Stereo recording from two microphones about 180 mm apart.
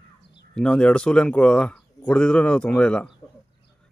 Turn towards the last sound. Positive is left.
turn(degrees=5)  # may be behind; listen again after turning